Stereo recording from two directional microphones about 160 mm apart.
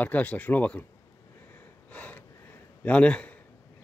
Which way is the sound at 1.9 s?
10° left (ahead or behind).